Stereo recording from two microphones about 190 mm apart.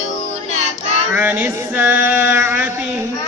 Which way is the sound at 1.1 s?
10° right (ahead or behind).